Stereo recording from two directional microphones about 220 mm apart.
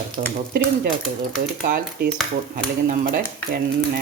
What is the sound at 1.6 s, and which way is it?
Speech, 45° right (ahead or behind).